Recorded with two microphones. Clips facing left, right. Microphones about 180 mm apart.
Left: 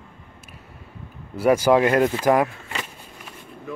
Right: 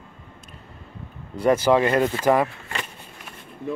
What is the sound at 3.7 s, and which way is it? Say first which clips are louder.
Speech: right 4 dB; 30° right (ahead or behind).